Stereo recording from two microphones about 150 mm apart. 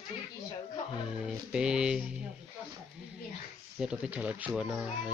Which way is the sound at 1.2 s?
5° right (ahead or behind).